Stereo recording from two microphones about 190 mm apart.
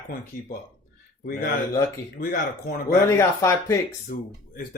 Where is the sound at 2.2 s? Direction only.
50° left (ahead or behind).